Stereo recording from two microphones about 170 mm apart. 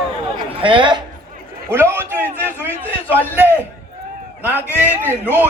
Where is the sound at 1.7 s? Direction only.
15° right (ahead or behind).